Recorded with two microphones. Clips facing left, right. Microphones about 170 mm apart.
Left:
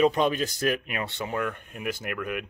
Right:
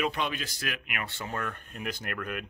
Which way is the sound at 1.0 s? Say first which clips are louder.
Left 5 dB; 20° left (ahead or behind).